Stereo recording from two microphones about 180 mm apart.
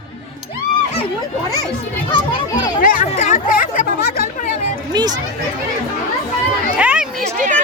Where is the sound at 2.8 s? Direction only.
45° left (ahead or behind).